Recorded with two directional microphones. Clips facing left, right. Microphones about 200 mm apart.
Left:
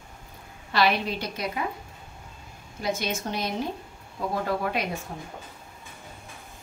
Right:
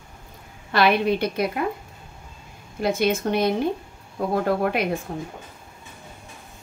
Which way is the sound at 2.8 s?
55° right (ahead or behind).